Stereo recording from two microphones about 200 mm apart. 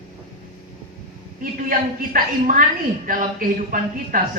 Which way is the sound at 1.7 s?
45° right (ahead or behind).